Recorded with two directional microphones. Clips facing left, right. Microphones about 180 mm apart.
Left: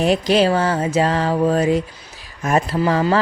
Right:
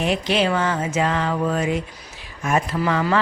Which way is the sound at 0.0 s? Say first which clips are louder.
Left 5 dB; 35° left (ahead or behind).